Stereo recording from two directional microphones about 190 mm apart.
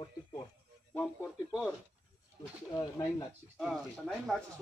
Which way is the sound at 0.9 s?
10° left (ahead or behind).